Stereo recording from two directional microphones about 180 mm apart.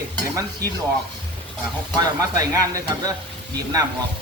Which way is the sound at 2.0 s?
20° right (ahead or behind).